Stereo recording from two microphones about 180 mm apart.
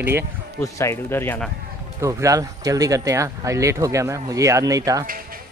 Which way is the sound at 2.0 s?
15° right (ahead or behind).